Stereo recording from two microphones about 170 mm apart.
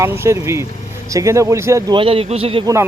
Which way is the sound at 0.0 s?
15° right (ahead or behind).